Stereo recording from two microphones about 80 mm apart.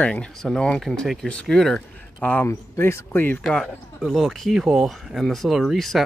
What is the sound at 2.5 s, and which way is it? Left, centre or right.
Speech, left.